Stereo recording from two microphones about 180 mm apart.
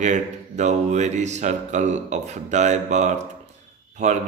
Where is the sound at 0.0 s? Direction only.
40° right (ahead or behind).